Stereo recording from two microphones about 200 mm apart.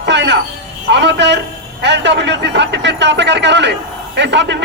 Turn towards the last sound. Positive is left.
turn(degrees=-60)  # may be behind; listen again after turning